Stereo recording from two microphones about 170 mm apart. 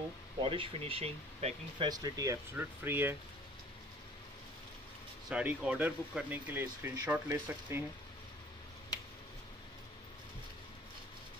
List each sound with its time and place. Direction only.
0.4 s speech: 30° right (ahead or behind)
1.9 s speech: 20° right (ahead or behind)
5.3 s speech: 5° right (ahead or behind)